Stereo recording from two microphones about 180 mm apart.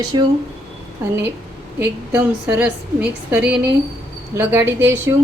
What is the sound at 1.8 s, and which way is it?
A woman's voice, 10° right (ahead or behind).